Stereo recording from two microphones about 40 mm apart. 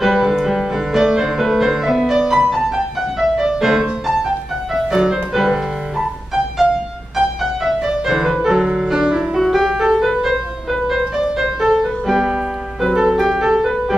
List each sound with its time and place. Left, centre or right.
0.0 s music: centre
4.9 s music: centre
9.5 s music: centre